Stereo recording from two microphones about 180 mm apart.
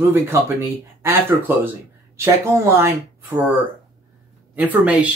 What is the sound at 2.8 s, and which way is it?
Speech, 15° right (ahead or behind).